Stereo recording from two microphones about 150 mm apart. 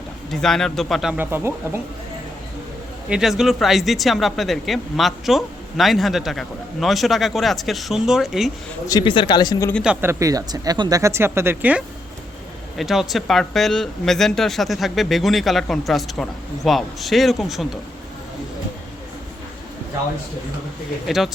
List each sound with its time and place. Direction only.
0.3 s speech: 5° left (ahead or behind)
1.1 s speech: 15° right (ahead or behind)
3.1 s speech: 5° right (ahead or behind)
8.9 s speech: 30° left (ahead or behind)
9.8 s speech: 10° right (ahead or behind)
12.7 s speech: centre (ahead or behind)
21.1 s speech: centre (ahead or behind)